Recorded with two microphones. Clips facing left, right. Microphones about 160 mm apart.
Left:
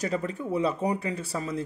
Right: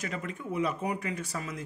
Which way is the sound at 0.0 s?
35° left (ahead or behind).